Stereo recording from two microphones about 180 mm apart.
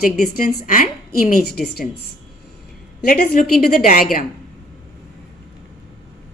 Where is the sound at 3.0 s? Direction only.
60° left (ahead or behind).